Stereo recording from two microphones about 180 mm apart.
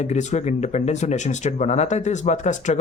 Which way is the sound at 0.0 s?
40° left (ahead or behind).